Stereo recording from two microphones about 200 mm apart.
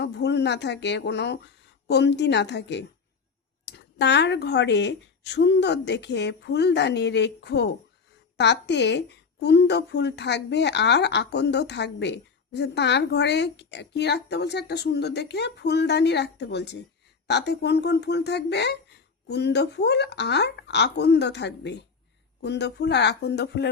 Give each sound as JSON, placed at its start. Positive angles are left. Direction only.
{"t": 0.0, "sound": "a woman's voice", "side_deg": 60}